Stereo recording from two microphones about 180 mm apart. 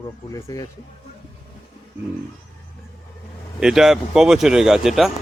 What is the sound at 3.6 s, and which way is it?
Speech, 5° right (ahead or behind).